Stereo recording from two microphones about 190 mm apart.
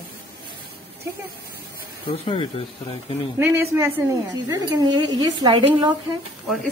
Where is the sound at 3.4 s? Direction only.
15° right (ahead or behind).